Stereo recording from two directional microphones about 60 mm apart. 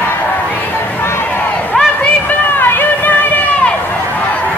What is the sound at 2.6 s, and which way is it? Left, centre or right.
Music, left.